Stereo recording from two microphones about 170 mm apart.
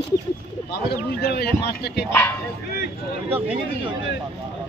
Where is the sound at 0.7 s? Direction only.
70° left (ahead or behind).